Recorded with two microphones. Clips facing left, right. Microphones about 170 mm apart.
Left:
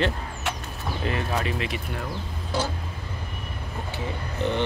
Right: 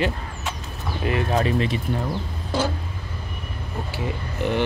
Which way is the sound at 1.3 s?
35° right (ahead or behind).